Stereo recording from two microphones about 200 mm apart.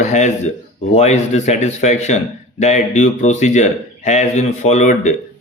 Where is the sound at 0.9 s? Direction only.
35° left (ahead or behind).